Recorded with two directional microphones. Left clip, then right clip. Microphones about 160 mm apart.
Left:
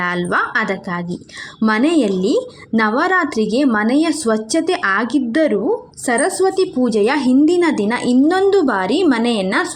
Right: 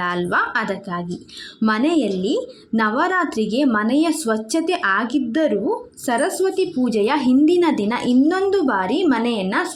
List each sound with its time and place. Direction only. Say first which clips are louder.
0.0 s a woman's voice: left 2 dB; 20° left (ahead or behind)